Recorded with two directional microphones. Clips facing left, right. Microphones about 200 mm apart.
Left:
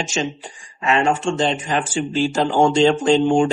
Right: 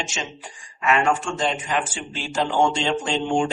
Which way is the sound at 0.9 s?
25° left (ahead or behind).